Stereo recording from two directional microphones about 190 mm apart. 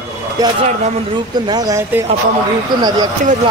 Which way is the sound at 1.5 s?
15° right (ahead or behind).